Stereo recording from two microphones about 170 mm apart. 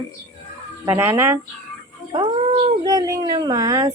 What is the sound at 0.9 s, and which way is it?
Speech, 15° right (ahead or behind).